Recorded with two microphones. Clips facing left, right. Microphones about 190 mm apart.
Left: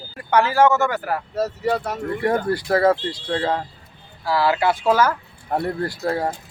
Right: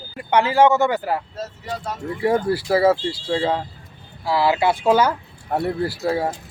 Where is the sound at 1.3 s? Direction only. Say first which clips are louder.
Left 9 dB; 70° left (ahead or behind).